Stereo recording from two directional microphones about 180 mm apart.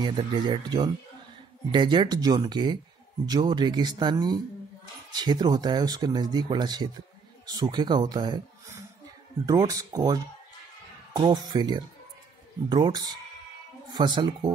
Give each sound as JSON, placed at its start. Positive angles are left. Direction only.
{"t": 0.0, "sound": "speech", "side_deg": -25}